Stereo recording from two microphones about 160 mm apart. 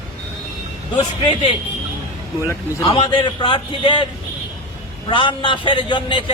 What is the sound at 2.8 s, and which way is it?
A man's voice, 35° left (ahead or behind).